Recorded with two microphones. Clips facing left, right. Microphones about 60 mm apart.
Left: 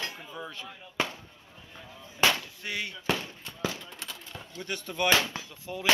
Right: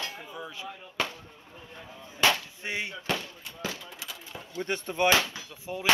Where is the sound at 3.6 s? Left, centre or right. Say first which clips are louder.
Left 3 dB; centre.